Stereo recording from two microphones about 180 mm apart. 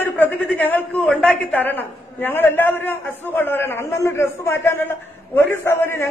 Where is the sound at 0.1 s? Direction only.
10° left (ahead or behind).